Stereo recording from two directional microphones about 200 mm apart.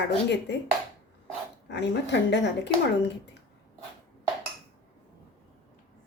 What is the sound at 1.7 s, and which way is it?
Speech, 60° left (ahead or behind).